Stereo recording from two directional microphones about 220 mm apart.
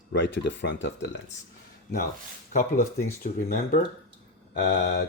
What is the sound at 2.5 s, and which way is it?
Speech, 35° left (ahead or behind).